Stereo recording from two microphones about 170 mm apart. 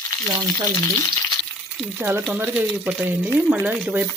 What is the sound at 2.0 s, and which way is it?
Speech, 15° right (ahead or behind).